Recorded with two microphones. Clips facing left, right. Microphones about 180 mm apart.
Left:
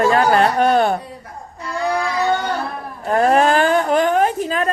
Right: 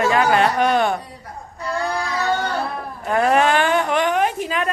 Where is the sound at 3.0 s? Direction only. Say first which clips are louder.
Left 2 dB; 35° left (ahead or behind).